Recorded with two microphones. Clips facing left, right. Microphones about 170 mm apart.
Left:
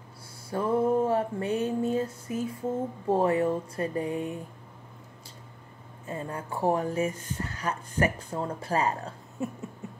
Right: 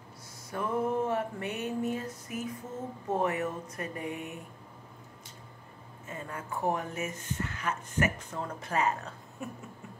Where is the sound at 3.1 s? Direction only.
30° left (ahead or behind).